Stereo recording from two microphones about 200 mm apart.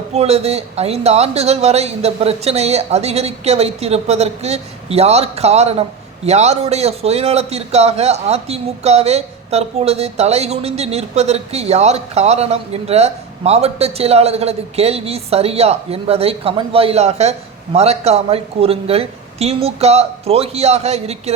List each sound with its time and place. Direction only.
0.1 s a man's voice: 30° right (ahead or behind)